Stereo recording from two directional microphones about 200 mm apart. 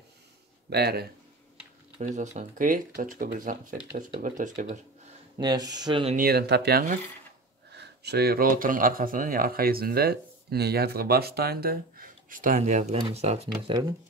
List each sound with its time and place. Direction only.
0.7 s speech: 55° right (ahead or behind)
2.0 s speech: 40° right (ahead or behind)
5.4 s speech: 20° right (ahead or behind)
6.1 s speech: 50° right (ahead or behind); by 13.5 s 30° right (ahead or behind)